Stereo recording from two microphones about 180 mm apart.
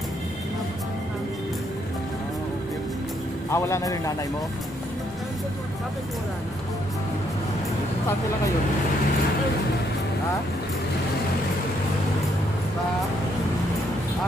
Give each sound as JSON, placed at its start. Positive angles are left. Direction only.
{"t": 3.4, "sound": "speech", "side_deg": 15}